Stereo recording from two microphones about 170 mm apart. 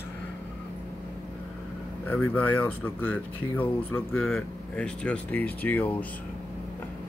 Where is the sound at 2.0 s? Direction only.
10° left (ahead or behind).